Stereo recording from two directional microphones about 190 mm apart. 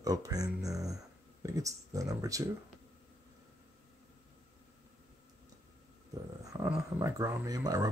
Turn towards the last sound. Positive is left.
turn(degrees=-20)  # may be behind; listen again after turning